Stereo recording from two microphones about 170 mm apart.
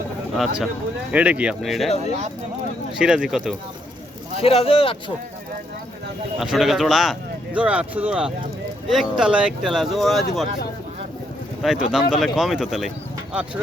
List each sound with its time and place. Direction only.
1.1 s speech: 5° right (ahead or behind)
3.0 s speech: 5° right (ahead or behind)
4.4 s speech: 35° left (ahead or behind)
6.4 s speech: centre (ahead or behind)
11.6 s speech: 5° right (ahead or behind)